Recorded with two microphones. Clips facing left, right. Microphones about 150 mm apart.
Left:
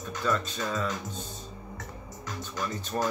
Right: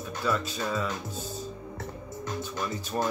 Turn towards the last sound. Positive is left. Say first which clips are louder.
# even
turn(degrees=-10)  # may be behind; listen again after turning